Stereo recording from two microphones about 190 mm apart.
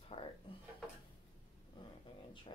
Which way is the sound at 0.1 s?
30° left (ahead or behind).